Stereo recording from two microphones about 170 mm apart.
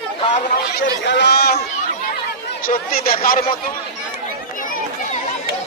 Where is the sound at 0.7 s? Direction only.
90° left; by 1.6 s 75° left (ahead or behind).